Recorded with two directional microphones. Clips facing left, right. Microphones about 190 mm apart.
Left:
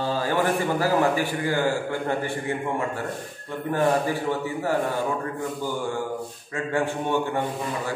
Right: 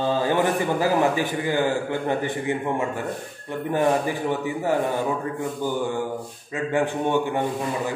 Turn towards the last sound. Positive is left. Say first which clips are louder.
# right 2 dB
turn(degrees=-15)  # may be behind; listen again after turning